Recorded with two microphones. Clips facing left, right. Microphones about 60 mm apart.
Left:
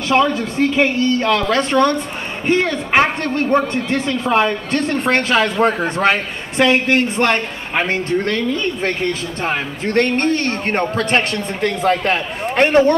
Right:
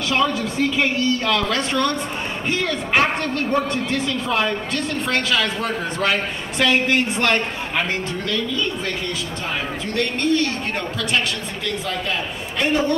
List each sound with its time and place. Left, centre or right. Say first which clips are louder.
0.1 s a man's voice: left 5 dB; left
8.3 s speech: left 4 dB; left